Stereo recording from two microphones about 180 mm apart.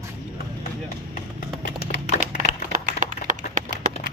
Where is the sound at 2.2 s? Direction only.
45° right (ahead or behind).